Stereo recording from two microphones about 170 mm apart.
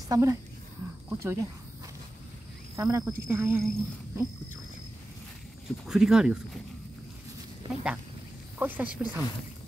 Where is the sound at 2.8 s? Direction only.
20° right (ahead or behind).